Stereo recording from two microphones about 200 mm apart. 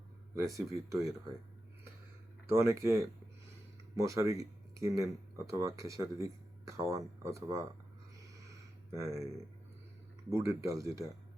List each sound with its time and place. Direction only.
0.3 s speech: 15° right (ahead or behind)
2.5 s speech: 15° right (ahead or behind)
8.9 s speech: 15° right (ahead or behind)
10.3 s speech: 15° right (ahead or behind)